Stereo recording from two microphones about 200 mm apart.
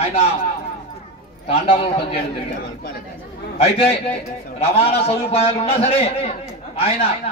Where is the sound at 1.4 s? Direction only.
30° left (ahead or behind).